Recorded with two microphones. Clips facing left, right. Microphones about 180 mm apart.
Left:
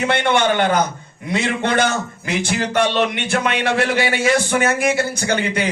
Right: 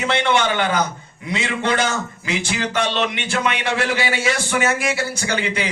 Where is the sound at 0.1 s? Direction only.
55° left (ahead or behind).